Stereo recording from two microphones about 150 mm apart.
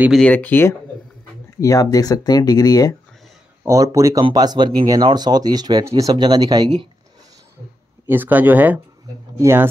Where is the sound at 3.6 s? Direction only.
20° right (ahead or behind).